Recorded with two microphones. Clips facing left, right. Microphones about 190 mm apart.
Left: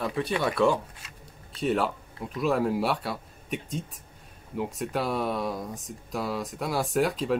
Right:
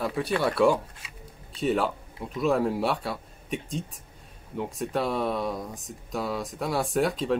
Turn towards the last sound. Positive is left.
turn(degrees=0)  # may be behind; listen again after turning